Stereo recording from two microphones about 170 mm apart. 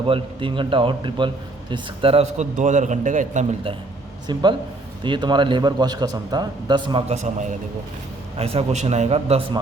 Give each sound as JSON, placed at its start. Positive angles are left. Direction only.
{"t": 0.1, "sound": "speech", "side_deg": -30}
{"t": 2.6, "sound": "a man's voice", "side_deg": -45}
{"t": 4.3, "sound": "a man's voice", "side_deg": -25}
{"t": 7.1, "sound": "a man's voice", "side_deg": -45}